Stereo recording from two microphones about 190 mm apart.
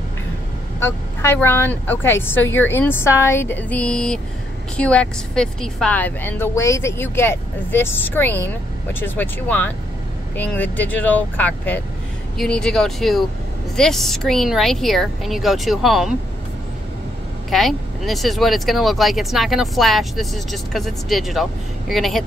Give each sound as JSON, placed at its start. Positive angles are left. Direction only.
{"t": 0.7, "sound": "a woman's voice", "side_deg": 15}
{"t": 17.5, "sound": "speech", "side_deg": 0}